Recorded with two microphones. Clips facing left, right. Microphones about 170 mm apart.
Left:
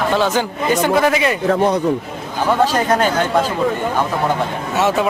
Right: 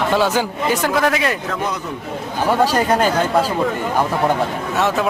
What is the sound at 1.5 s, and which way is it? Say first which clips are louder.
Speech: left 8 dB; 30° left (ahead or behind).